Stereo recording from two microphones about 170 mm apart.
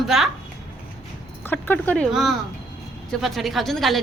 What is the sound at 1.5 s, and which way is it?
Speech, 10° left (ahead or behind).